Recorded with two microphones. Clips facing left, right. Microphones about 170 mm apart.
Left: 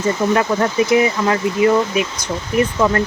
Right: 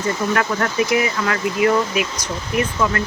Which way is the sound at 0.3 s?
25° left (ahead or behind).